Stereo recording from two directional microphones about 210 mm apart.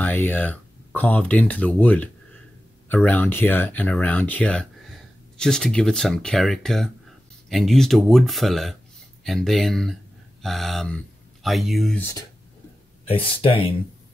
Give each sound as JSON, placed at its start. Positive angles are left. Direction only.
{"t": 0.0, "sound": "speech", "side_deg": 10}
{"t": 13.1, "sound": "speech", "side_deg": 25}